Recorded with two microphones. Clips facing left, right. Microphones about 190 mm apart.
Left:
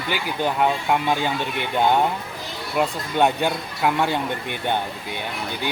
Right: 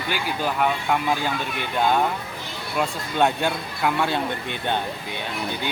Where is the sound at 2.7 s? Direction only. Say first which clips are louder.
Left 2 dB; 15° left (ahead or behind).